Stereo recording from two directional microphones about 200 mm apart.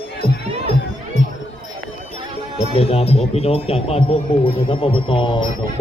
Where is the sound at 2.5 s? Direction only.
30° left (ahead or behind).